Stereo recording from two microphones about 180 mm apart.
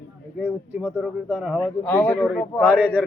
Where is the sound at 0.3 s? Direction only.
10° right (ahead or behind).